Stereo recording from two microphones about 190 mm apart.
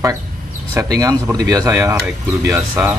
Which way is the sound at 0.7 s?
20° right (ahead or behind).